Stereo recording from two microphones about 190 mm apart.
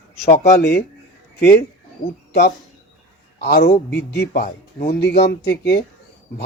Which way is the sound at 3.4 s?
55° left (ahead or behind).